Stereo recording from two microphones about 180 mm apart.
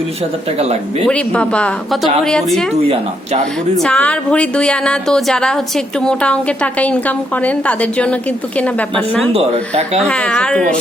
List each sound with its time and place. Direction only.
0.6 s speech: 35° right (ahead or behind)
1.0 s speech: 5° left (ahead or behind)
3.8 s a woman's voice: 5° left (ahead or behind)
9.3 s speech: 35° right (ahead or behind)
10.0 s speech: 5° left (ahead or behind)